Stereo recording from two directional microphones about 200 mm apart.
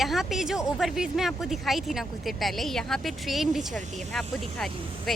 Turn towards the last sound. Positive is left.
turn(degrees=0)  # may be behind; listen again after turning